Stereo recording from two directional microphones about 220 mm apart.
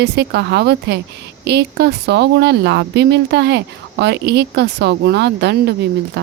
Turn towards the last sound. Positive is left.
turn(degrees=-50)  # may be behind; listen again after turning